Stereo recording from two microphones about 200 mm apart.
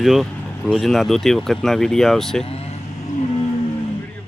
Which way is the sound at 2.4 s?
30° left (ahead or behind).